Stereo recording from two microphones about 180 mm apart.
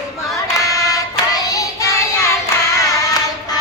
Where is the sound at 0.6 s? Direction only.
20° left (ahead or behind).